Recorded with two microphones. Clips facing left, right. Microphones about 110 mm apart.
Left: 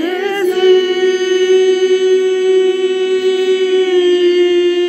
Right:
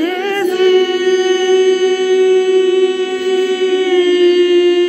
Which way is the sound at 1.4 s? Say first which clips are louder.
Left 1 dB; 40° right (ahead or behind).